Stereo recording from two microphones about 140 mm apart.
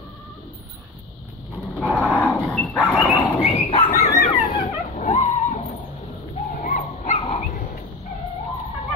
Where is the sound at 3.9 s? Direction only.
50° left (ahead or behind).